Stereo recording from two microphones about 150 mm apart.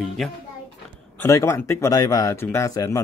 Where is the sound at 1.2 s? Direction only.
20° left (ahead or behind).